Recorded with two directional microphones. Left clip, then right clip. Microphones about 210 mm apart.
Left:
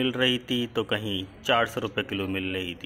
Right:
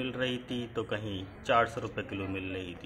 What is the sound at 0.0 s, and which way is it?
Speech, 25° left (ahead or behind).